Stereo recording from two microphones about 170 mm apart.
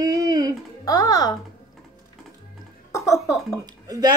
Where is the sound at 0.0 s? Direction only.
20° right (ahead or behind).